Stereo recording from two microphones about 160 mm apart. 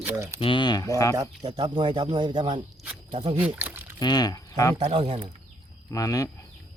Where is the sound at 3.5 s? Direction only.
10° right (ahead or behind).